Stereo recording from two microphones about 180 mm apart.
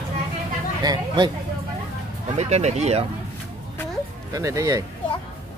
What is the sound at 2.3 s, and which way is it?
Speech, 40° right (ahead or behind).